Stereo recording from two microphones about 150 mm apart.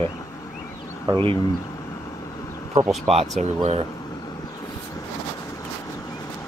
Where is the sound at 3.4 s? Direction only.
45° right (ahead or behind).